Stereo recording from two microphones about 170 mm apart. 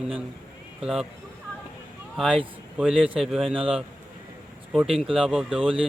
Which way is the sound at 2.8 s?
5° right (ahead or behind).